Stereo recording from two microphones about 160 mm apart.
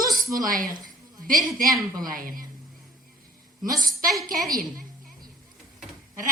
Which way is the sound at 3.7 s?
60° right (ahead or behind).